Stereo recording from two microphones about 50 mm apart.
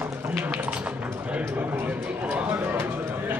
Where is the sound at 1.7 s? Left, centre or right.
Right.